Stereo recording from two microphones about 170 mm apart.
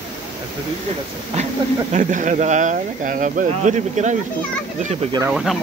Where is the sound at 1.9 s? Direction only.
50° right (ahead or behind).